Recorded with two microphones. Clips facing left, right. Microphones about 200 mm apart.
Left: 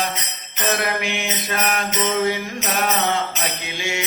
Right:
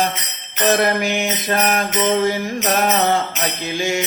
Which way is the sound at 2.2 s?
40° right (ahead or behind).